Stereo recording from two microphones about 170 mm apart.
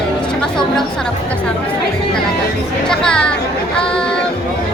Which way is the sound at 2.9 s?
5° left (ahead or behind).